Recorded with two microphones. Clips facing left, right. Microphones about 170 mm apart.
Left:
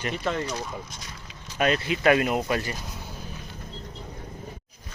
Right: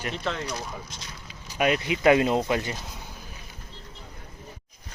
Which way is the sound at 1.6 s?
15° right (ahead or behind).